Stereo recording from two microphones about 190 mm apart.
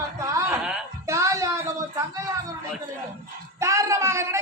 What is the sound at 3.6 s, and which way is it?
Speech, 15° right (ahead or behind).